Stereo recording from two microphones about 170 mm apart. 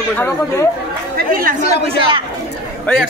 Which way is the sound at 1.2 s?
55° right (ahead or behind).